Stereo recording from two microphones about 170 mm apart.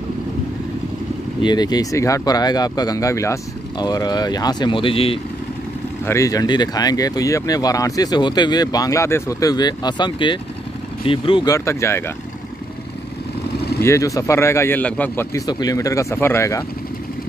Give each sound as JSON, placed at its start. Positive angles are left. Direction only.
{"t": 1.4, "sound": "speech", "side_deg": 25}
{"t": 6.0, "sound": "speech", "side_deg": 20}
{"t": 11.5, "sound": "a man's voice", "side_deg": 15}
{"t": 13.8, "sound": "a man's voice", "side_deg": 20}
{"t": 15.3, "sound": "speech", "side_deg": 20}